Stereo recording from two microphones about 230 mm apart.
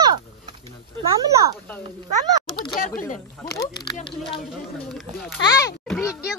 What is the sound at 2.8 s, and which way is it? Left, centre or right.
Speech, left.